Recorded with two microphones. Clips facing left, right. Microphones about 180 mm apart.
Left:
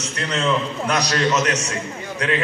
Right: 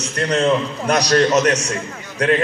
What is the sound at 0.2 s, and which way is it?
A man's voice, 45° right (ahead or behind).